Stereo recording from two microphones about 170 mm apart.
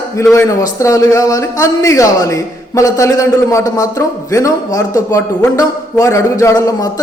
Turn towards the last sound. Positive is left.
turn(degrees=20)  # may be behind; listen again after turning